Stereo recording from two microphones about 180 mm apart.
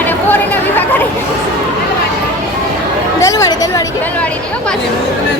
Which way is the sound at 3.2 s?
20° left (ahead or behind).